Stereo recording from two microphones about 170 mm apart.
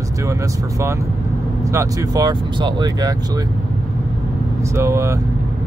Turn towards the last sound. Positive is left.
turn(degrees=-15)  # may be behind; listen again after turning